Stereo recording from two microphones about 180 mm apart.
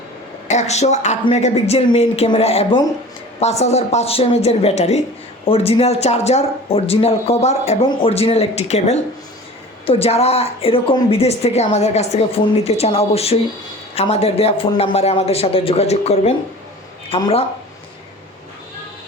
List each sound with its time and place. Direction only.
0.4 s a woman's voice: 40° left (ahead or behind)